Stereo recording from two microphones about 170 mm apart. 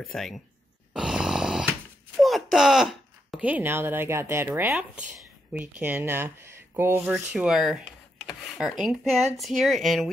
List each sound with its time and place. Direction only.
0.1 s speech: centre (ahead or behind)
0.9 s a sound: 5° right (ahead or behind)
2.2 s speech: centre (ahead or behind)